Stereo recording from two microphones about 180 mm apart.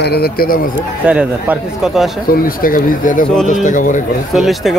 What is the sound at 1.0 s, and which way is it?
A man's voice, 5° right (ahead or behind).